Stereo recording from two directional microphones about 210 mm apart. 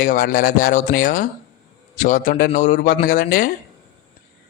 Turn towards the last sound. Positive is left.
turn(degrees=40)  # may be behind; listen again after turning